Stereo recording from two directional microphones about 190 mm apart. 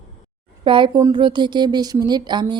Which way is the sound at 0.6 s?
25° right (ahead or behind).